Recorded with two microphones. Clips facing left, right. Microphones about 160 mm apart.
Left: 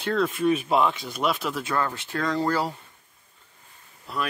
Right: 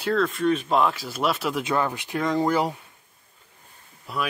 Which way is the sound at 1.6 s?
15° right (ahead or behind).